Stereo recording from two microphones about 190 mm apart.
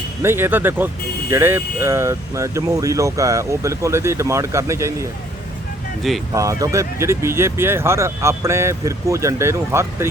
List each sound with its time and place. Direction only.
0.2 s speech: 10° right (ahead or behind)
6.0 s speech: centre (ahead or behind)
6.3 s speech: 15° right (ahead or behind)